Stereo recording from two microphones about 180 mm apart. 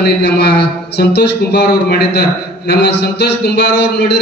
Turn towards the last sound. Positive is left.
turn(degrees=65)  # may be behind; listen again after turning